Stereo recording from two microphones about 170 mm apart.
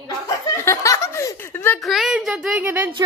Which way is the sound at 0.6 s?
15° left (ahead or behind).